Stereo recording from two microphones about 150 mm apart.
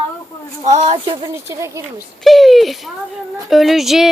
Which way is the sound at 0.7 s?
45° right (ahead or behind).